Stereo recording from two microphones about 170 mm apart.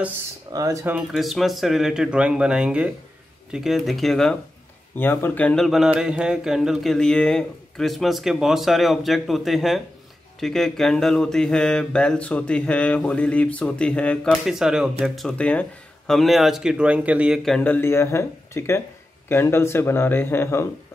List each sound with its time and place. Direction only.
0.5 s speech: 20° right (ahead or behind)
0.9 s mantra: centre (ahead or behind); by 18.8 s 15° left (ahead or behind)
19.2 s speech: 15° left (ahead or behind)